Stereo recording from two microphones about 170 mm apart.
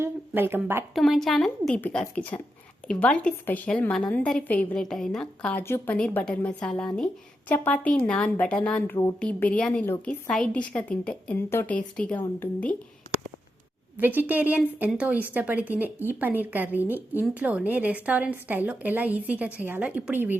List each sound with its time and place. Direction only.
0.0 s a sound: 15° right (ahead or behind)
0.9 s a woman's voice: centre (ahead or behind)
14.0 s a woman's voice: 10° right (ahead or behind)